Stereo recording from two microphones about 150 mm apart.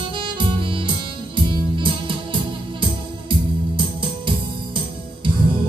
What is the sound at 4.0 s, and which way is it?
Music, 35° right (ahead or behind).